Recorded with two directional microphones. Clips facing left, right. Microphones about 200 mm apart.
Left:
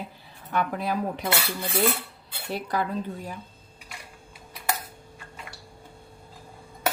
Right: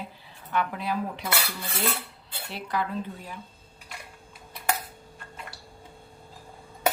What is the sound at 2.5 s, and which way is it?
Speech, 40° left (ahead or behind).